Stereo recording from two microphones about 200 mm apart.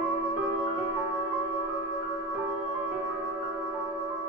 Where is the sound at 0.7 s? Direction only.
Centre (ahead or behind).